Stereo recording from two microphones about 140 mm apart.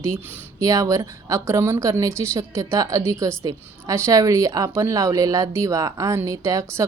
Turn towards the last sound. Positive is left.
turn(degrees=-20)  # may be behind; listen again after turning